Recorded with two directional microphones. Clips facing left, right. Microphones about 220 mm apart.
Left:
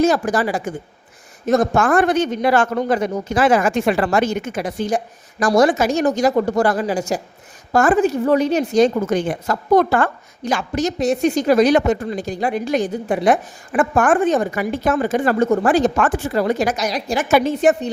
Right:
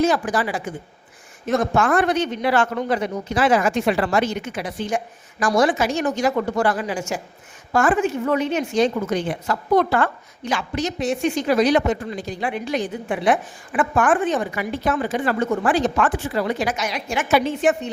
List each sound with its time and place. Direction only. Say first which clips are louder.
0.0 s a woman's voice: left 3 dB; 45° left (ahead or behind)